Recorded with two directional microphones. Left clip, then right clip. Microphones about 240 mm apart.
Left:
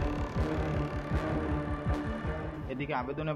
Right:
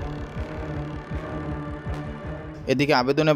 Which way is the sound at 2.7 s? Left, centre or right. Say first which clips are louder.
Right 15 dB; right.